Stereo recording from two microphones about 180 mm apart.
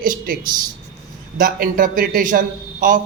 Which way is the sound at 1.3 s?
50° right (ahead or behind).